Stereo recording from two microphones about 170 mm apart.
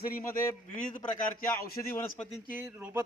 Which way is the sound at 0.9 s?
55° left (ahead or behind).